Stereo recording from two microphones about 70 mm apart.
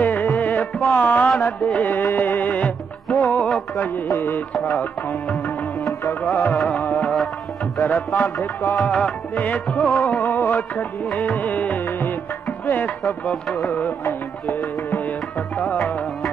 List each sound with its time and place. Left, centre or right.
0.0 s music: left
5.3 s music: centre
6.3 s music: left
7.8 s music: left
13.2 s music: centre
13.7 s music: left
14.9 s tabla: left
15.8 s music: centre